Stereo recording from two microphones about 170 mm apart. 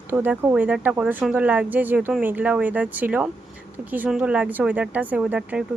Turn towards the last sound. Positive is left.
turn(degrees=-5)  # may be behind; listen again after turning